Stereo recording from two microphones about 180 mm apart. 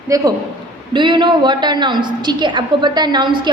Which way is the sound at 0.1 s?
20° right (ahead or behind).